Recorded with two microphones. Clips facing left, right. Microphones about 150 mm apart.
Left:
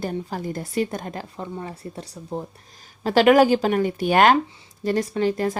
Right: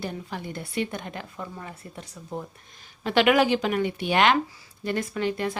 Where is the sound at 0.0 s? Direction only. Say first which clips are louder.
Left 6 dB; 40° left (ahead or behind).